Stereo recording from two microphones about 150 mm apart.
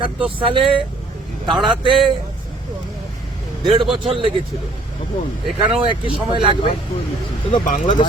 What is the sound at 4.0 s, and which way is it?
Speech, 35° right (ahead or behind).